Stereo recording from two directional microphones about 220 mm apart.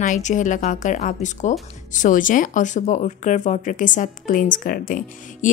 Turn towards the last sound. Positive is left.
turn(degrees=35)  # may be behind; listen again after turning